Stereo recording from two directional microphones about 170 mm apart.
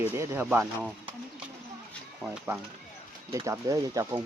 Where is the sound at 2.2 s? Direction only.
5° right (ahead or behind).